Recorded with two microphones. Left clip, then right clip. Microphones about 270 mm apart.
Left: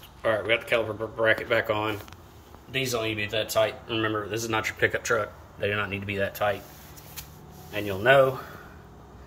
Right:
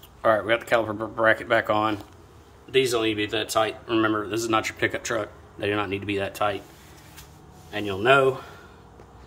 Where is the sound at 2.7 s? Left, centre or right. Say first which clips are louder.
Right 6 dB; centre.